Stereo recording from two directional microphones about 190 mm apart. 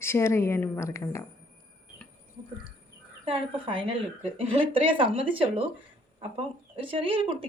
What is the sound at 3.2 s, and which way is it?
Speech, 25° right (ahead or behind).